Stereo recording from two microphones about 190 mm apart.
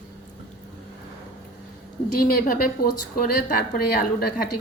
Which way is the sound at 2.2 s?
50° left (ahead or behind).